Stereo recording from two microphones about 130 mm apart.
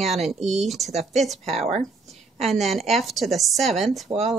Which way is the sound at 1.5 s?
55° right (ahead or behind).